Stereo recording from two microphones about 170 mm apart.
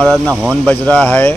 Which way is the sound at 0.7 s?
10° left (ahead or behind).